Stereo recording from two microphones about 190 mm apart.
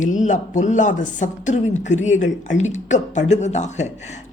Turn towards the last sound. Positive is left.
turn(degrees=35)  # may be behind; listen again after turning